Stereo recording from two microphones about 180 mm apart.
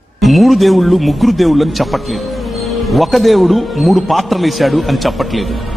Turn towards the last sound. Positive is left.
turn(degrees=0)  # may be behind; listen again after turning